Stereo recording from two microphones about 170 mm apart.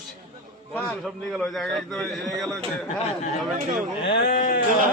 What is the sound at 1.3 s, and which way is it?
A man's voice, centre (ahead or behind).